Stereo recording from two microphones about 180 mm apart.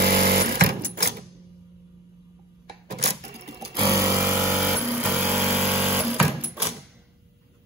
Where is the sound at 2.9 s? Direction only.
65° right (ahead or behind).